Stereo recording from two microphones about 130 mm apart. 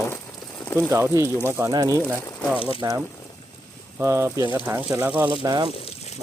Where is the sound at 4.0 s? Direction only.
25° right (ahead or behind).